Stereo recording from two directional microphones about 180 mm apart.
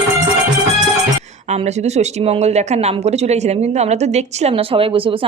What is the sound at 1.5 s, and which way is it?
A woman's voice, 40° right (ahead or behind).